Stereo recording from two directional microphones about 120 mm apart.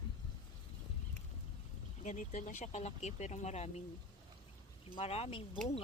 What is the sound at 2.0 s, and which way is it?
Speech, 90° left.